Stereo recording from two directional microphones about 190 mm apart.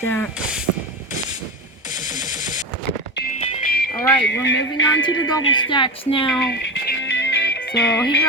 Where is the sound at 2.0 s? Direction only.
20° right (ahead or behind).